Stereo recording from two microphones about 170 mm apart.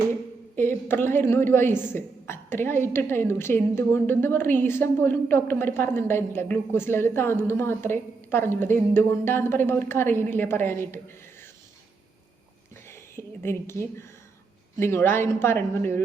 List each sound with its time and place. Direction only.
0.5 s a woman's voice: 15° left (ahead or behind)
12.9 s a sound: 15° left (ahead or behind)
14.8 s a woman's voice: 15° left (ahead or behind)